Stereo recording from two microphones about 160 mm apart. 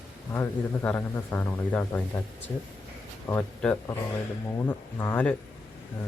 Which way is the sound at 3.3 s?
10° left (ahead or behind).